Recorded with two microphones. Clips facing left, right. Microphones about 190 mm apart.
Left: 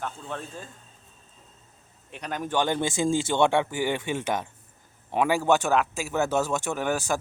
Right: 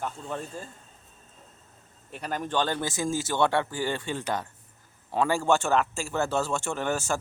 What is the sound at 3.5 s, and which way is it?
Speech, 15° left (ahead or behind).